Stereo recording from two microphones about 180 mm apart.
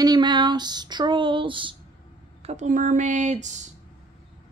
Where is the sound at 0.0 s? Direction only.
25° right (ahead or behind).